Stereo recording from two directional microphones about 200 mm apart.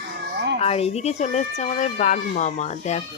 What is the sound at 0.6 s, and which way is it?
Speech, 30° left (ahead or behind).